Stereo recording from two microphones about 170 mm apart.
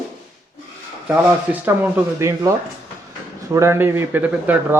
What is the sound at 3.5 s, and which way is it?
Speech, 15° right (ahead or behind).